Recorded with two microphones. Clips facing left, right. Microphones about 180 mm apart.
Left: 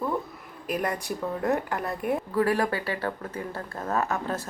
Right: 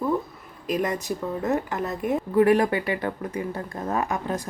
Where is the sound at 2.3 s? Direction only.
20° right (ahead or behind).